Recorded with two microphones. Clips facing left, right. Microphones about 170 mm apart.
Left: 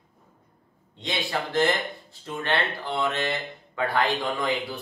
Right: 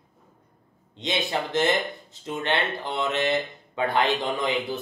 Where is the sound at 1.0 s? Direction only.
20° right (ahead or behind).